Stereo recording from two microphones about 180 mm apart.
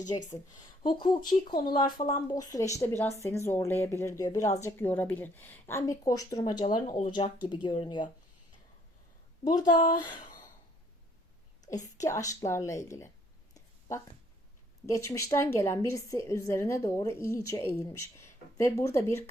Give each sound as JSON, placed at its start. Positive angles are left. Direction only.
{"t": 0.1, "sound": "speech", "side_deg": 20}
{"t": 1.8, "sound": "speech", "side_deg": 45}
{"t": 2.3, "sound": "speech", "side_deg": 20}
{"t": 6.8, "sound": "speech", "side_deg": 40}
{"t": 7.4, "sound": "speech", "side_deg": 25}
{"t": 9.6, "sound": "speech", "side_deg": 45}
{"t": 11.6, "sound": "speech", "side_deg": 20}
{"t": 13.5, "sound": "a sound", "side_deg": 20}
{"t": 14.8, "sound": "speech", "side_deg": 15}